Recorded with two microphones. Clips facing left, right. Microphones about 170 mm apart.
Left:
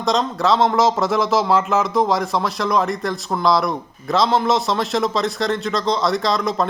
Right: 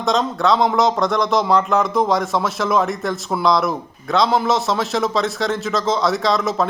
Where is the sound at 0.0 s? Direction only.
Centre (ahead or behind).